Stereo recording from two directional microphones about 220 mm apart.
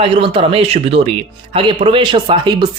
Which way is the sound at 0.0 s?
25° right (ahead or behind).